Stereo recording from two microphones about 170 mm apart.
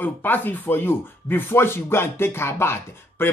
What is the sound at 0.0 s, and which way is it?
Speech, 10° left (ahead or behind).